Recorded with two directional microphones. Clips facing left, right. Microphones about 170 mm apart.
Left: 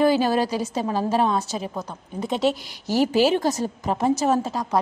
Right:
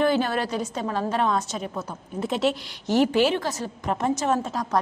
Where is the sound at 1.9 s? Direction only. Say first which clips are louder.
Left 1 dB; 5° right (ahead or behind).